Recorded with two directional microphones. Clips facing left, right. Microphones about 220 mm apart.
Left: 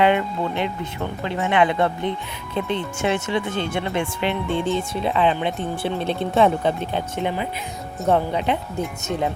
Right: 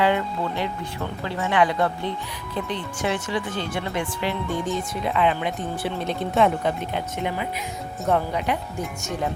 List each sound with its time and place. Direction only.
0.0 s music: 20° left (ahead or behind)
1.2 s speech: 20° left (ahead or behind)